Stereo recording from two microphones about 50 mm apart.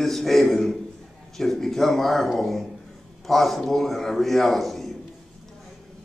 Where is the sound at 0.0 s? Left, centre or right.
Centre.